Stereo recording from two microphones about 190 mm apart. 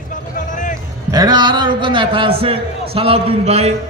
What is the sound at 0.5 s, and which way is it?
Music, 40° left (ahead or behind).